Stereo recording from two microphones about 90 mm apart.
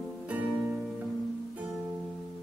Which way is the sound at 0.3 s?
15° right (ahead or behind).